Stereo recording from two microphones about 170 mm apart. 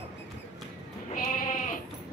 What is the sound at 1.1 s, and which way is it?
Sheep, 55° left (ahead or behind).